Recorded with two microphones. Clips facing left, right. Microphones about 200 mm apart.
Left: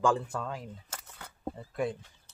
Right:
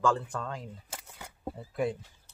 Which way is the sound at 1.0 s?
10° right (ahead or behind).